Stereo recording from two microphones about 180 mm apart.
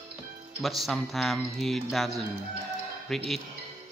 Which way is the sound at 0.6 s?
Centre (ahead or behind).